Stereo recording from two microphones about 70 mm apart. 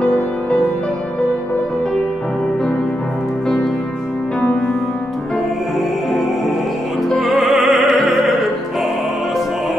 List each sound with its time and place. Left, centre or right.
0.0 s music: centre
7.1 s music: centre